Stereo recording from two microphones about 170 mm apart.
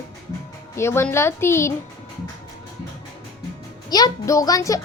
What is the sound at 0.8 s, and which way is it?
Speech, 15° left (ahead or behind).